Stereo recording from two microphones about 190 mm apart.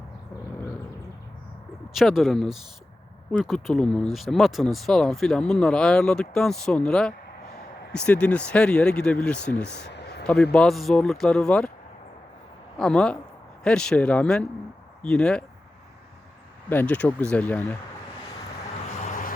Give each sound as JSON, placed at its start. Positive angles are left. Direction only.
{"t": 2.0, "sound": "speech", "side_deg": 0}
{"t": 9.6, "sound": "a sound", "side_deg": 60}
{"t": 10.5, "sound": "speech", "side_deg": 5}
{"t": 12.7, "sound": "speech", "side_deg": 5}
{"t": 16.6, "sound": "speech", "side_deg": 10}
{"t": 18.9, "sound": "vehicle", "side_deg": 40}